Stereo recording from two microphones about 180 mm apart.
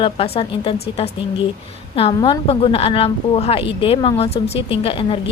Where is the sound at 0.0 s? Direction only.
30° left (ahead or behind).